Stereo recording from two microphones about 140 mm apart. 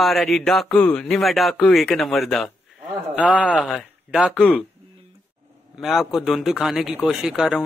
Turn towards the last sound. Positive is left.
turn(degrees=-5)  # may be behind; listen again after turning